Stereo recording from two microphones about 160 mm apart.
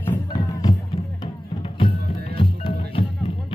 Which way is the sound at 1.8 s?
30° left (ahead or behind).